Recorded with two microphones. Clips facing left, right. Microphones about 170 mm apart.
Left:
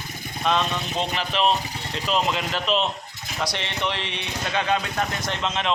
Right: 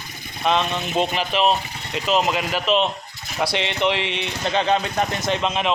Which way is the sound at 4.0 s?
60° right (ahead or behind).